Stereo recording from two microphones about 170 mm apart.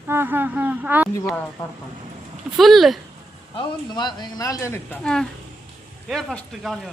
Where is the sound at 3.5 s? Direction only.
30° left (ahead or behind).